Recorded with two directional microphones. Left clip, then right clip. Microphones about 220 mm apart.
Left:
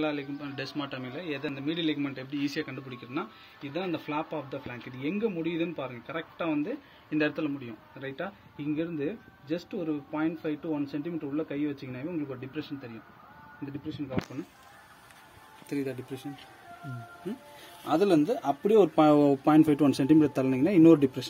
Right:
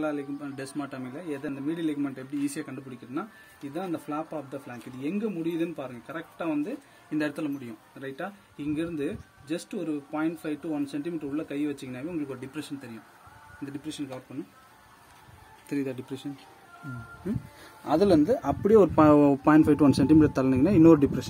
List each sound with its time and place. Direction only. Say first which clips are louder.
0.0 s a man's voice: right 1 dB; 15° right (ahead or behind)
15.7 s speech: right 2 dB; 20° right (ahead or behind)
17.8 s speech: right 3 dB; 25° right (ahead or behind)